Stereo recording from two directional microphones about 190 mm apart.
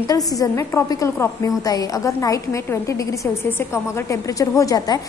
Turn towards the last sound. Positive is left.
turn(degrees=20)  # may be behind; listen again after turning